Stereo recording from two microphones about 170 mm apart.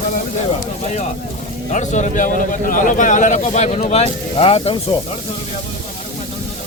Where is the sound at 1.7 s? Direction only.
45° left (ahead or behind).